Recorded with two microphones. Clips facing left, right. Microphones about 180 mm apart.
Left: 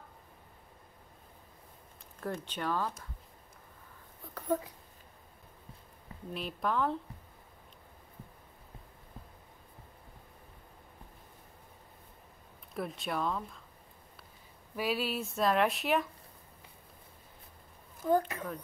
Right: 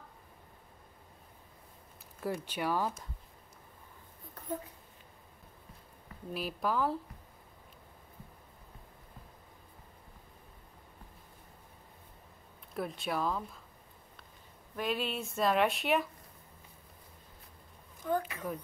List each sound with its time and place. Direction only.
2.1 s speech: 10° right (ahead or behind)
4.3 s a sound: 90° left
6.3 s speech: 5° right (ahead or behind)
12.7 s speech: centre (ahead or behind)
14.8 s speech: 5° left (ahead or behind)
18.0 s speech: 35° left (ahead or behind)